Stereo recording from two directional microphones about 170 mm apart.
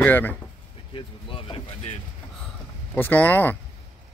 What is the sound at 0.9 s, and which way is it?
Speech, 30° left (ahead or behind).